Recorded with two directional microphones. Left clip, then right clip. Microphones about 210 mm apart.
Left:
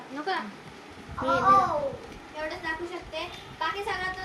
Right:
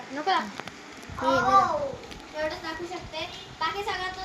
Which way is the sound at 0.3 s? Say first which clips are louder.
Right 5 dB; 15° right (ahead or behind).